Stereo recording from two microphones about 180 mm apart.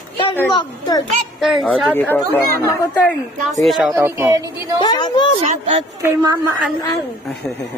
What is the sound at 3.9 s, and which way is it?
Speech, 15° right (ahead or behind).